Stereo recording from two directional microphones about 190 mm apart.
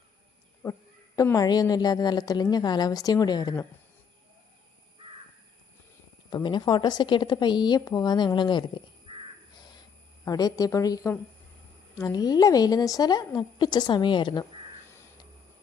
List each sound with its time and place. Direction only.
0.6 s a woman's voice: 15° left (ahead or behind)
6.3 s a woman's voice: 25° left (ahead or behind)
9.1 s crow: 25° right (ahead or behind)
10.2 s a woman's voice: 20° left (ahead or behind)
14.8 s a sound: 15° left (ahead or behind)